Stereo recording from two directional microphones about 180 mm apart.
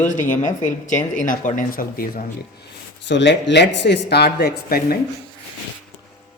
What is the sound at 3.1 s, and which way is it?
Speech, 80° left.